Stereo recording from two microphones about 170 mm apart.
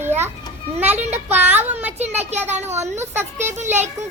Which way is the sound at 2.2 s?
40° right (ahead or behind).